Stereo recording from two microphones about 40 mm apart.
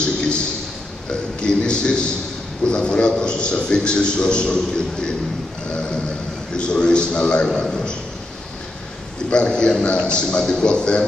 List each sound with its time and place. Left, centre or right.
1.4 s a man's voice: left
6.5 s a man's voice: left
9.3 s a man's voice: left